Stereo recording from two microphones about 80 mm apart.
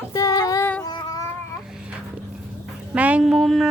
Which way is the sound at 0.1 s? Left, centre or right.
Left.